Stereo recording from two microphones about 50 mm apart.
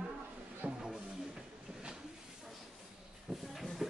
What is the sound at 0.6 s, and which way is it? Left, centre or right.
Music, right.